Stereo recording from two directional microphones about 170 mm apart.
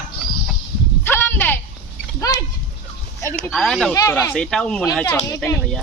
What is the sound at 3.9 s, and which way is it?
Speech, 20° left (ahead or behind).